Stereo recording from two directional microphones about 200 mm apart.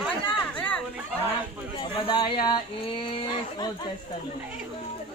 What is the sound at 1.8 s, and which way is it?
Speech, 25° left (ahead or behind).